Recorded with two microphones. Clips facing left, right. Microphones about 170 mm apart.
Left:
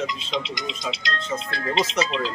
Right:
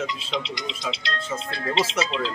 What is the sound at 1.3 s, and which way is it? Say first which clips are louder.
Speech: left 3 dB; 5° left (ahead or behind).